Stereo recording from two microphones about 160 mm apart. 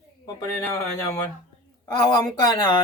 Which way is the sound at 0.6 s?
15° left (ahead or behind).